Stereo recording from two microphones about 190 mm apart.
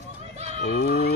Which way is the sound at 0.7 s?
60° left (ahead or behind).